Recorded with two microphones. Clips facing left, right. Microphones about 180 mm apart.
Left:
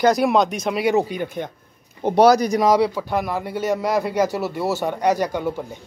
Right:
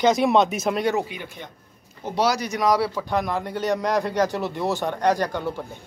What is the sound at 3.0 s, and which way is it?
Speech, 5° left (ahead or behind).